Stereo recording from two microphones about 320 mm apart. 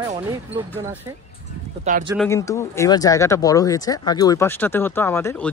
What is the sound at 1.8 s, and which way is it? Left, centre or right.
Speech, right.